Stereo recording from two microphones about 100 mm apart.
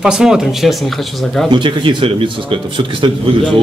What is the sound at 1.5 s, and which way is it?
A man's voice, 55° right (ahead or behind).